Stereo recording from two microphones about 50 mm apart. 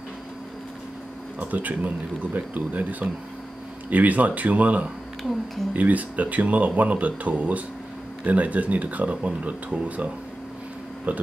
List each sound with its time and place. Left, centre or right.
1.4 s speech: right